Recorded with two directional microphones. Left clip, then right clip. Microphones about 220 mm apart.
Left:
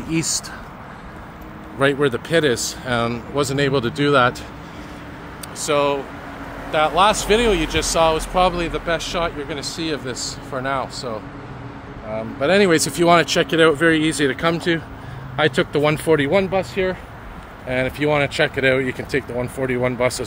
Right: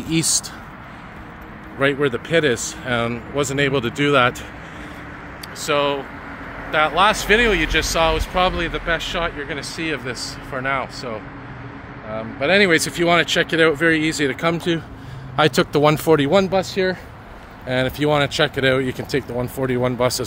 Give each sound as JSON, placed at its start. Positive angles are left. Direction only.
{"t": 0.1, "sound": "speech", "side_deg": -15}
{"t": 1.8, "sound": "speech", "side_deg": 5}
{"t": 5.8, "sound": "speech", "side_deg": 0}
{"t": 12.2, "sound": "speech", "side_deg": 10}
{"t": 13.5, "sound": "speech", "side_deg": 5}
{"t": 15.3, "sound": "speech", "side_deg": -25}